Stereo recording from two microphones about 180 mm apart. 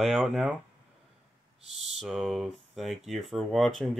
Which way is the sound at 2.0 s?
Centre (ahead or behind).